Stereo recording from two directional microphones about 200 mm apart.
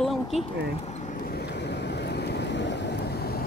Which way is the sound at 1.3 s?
60° left (ahead or behind).